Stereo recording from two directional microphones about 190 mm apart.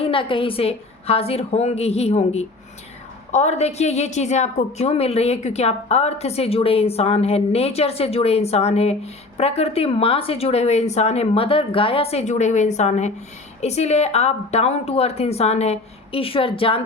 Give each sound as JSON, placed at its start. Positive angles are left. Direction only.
{"t": 0.0, "sound": "a woman's voice", "side_deg": 25}